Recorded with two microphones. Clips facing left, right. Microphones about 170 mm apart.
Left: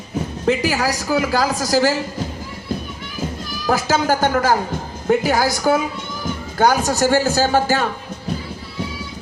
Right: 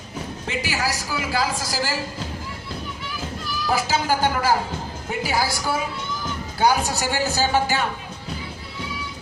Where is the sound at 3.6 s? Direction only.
45° left (ahead or behind).